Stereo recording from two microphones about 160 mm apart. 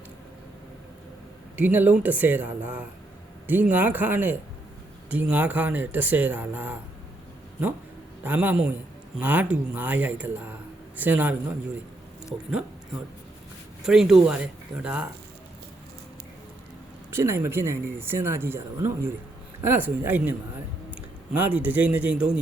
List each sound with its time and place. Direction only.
1.5 s speech: 10° right (ahead or behind)
8.2 s a man's voice: 10° right (ahead or behind)
13.8 s speech: 5° right (ahead or behind)
17.1 s speech: 15° right (ahead or behind)
21.3 s speech: 10° right (ahead or behind)